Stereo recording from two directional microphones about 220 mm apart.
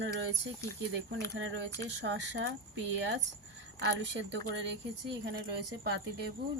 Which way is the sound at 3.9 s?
50° right (ahead or behind).